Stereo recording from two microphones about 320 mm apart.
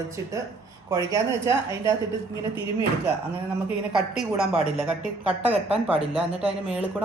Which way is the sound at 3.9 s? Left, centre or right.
Centre.